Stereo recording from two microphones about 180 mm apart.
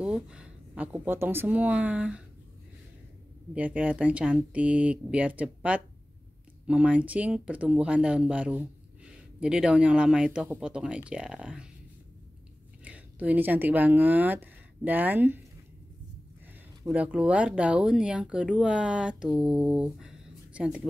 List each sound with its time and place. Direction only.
0.0 s speech: 5° right (ahead or behind)
3.5 s speech: 10° right (ahead or behind)
12.8 s speech: 10° right (ahead or behind)
16.8 s speech: 10° right (ahead or behind)